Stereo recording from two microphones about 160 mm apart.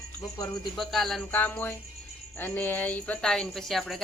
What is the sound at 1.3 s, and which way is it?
Music, 10° left (ahead or behind).